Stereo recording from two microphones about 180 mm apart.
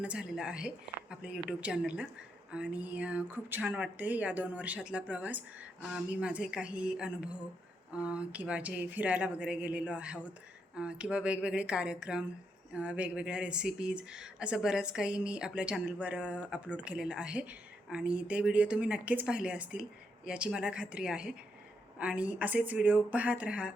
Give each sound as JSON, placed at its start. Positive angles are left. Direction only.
{"t": 0.0, "sound": "speech", "side_deg": -5}